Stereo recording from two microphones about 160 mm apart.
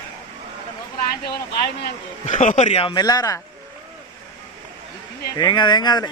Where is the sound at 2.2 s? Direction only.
50° left (ahead or behind).